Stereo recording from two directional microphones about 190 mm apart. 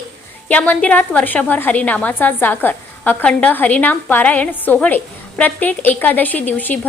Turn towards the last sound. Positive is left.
turn(degrees=10)  # may be behind; listen again after turning